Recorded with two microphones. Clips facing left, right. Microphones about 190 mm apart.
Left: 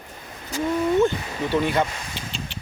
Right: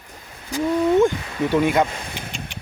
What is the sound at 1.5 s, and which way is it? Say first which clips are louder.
Speech: right 3 dB; 10° right (ahead or behind).